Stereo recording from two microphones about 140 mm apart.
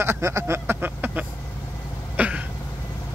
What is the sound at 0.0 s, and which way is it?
Speech, 20° right (ahead or behind).